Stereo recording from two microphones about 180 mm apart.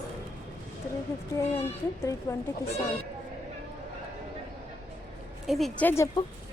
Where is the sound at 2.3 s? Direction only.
20° left (ahead or behind).